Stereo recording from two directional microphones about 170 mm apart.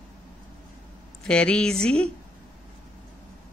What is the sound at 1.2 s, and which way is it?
Speech, 5° left (ahead or behind).